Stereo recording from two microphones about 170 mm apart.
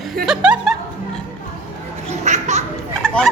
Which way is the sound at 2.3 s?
45° right (ahead or behind).